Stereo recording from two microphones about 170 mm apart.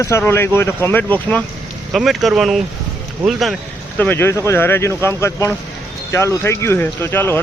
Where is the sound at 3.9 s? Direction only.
10° left (ahead or behind).